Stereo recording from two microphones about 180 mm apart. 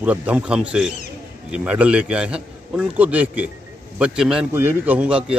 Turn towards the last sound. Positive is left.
turn(degrees=-5)  # may be behind; listen again after turning